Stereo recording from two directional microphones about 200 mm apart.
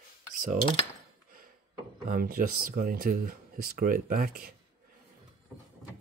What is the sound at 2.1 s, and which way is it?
Speech, 45° right (ahead or behind).